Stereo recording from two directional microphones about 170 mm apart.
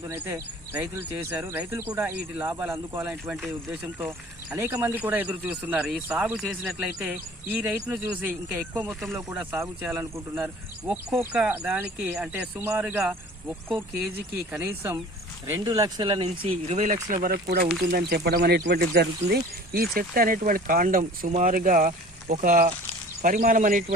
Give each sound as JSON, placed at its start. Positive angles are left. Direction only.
{"t": 0.1, "sound": "speech", "side_deg": -15}
{"t": 4.5, "sound": "speech", "side_deg": -15}
{"t": 14.5, "sound": "speech", "side_deg": -15}
{"t": 17.1, "sound": "speech", "side_deg": -50}
{"t": 17.9, "sound": "speech", "side_deg": -70}